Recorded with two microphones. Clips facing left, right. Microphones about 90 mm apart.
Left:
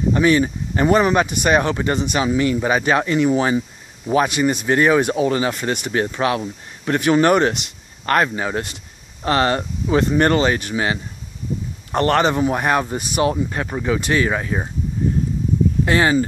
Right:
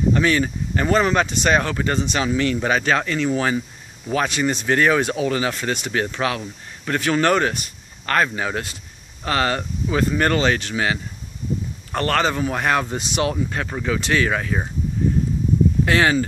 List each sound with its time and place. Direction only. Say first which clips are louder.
0.1 s speech: left 7 dB; 20° left (ahead or behind)
5.2 s speech: left 3 dB; 30° left (ahead or behind)
5.5 s speech: left 2 dB; 15° left (ahead or behind)
15.8 s speech: left 3 dB; 15° left (ahead or behind)